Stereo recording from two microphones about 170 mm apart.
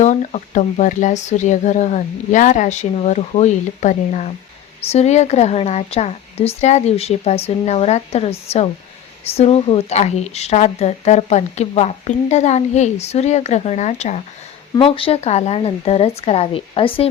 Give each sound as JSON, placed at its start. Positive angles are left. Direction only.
{"t": 0.0, "sound": "a woman's voice", "side_deg": 45}
{"t": 14.8, "sound": "a woman's voice", "side_deg": 30}